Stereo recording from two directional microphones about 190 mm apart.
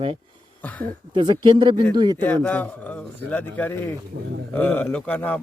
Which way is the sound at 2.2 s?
10° left (ahead or behind).